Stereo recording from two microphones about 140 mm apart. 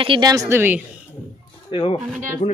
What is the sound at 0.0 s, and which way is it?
Speech, 40° right (ahead or behind).